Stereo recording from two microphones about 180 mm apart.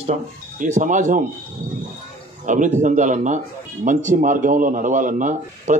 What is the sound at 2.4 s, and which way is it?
Speech, 45° right (ahead or behind).